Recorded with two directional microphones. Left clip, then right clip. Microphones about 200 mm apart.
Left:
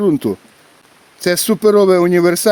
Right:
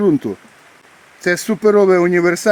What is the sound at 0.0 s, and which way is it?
Speech, 60° left (ahead or behind).